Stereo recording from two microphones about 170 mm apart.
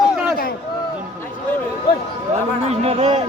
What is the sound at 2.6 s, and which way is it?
Speech, 35° right (ahead or behind).